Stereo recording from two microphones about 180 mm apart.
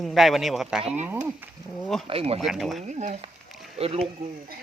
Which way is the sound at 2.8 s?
40° right (ahead or behind).